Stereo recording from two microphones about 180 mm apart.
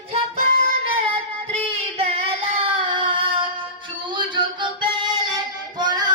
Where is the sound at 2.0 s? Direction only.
30° right (ahead or behind).